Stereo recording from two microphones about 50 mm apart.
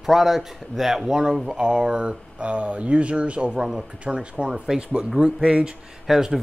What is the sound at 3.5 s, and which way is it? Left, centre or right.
Speech, centre.